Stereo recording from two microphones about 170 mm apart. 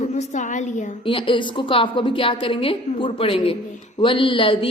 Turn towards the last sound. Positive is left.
turn(degrees=30)  # may be behind; listen again after turning